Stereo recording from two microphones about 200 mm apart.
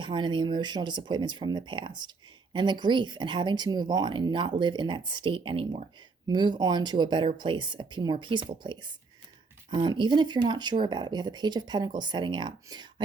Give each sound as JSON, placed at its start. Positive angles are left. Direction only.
{"t": 0.0, "sound": "speech", "side_deg": -25}